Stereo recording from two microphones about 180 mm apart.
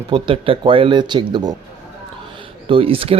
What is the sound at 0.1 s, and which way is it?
A man's voice, 30° right (ahead or behind).